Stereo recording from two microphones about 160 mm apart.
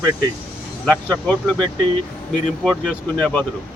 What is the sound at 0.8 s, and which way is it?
Speech, 5° left (ahead or behind).